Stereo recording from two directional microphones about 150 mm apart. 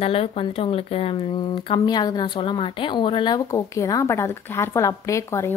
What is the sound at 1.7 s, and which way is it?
A woman's voice, 30° left (ahead or behind).